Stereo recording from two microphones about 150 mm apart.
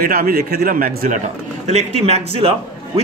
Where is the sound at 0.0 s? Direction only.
75° right (ahead or behind).